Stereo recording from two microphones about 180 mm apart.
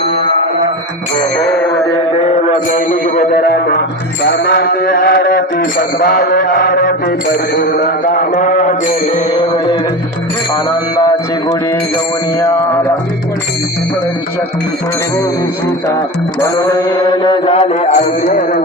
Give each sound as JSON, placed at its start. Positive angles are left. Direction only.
{"t": 2.1, "sound": "a man's voice", "side_deg": 35}
{"t": 3.4, "sound": "mantra", "side_deg": 65}
{"t": 8.0, "sound": "a sound", "side_deg": 45}
{"t": 9.1, "sound": "music", "side_deg": 25}
{"t": 16.4, "sound": "mantra", "side_deg": 20}